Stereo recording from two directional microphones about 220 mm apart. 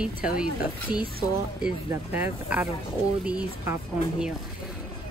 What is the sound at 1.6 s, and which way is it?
Speech, 5° right (ahead or behind).